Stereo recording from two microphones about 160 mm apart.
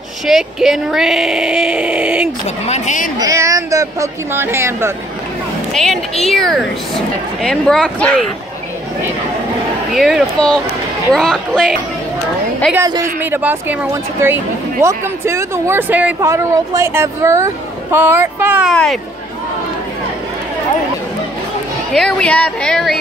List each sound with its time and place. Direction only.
0.3 s speech: centre (ahead or behind)
2.4 s a woman's voice: 45° left (ahead or behind)
3.2 s speech: 20° right (ahead or behind)
5.7 s a woman's voice: centre (ahead or behind)
9.9 s speech: centre (ahead or behind)
12.7 s a woman's voice: 20° right (ahead or behind)
18.7 s speech: centre (ahead or behind)
21.9 s speech: 5° left (ahead or behind)